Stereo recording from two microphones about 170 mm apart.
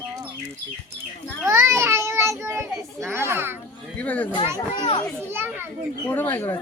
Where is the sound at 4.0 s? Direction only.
10° left (ahead or behind).